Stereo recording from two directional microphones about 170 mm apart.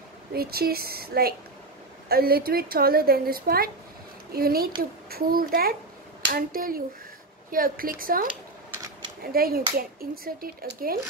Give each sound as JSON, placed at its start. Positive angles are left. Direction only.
{"t": 0.3, "sound": "a woman's voice", "side_deg": -65}